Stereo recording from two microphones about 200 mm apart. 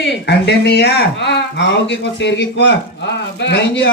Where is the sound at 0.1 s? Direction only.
55° left (ahead or behind).